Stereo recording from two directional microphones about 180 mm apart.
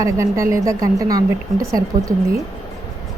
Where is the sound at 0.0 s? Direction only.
15° right (ahead or behind).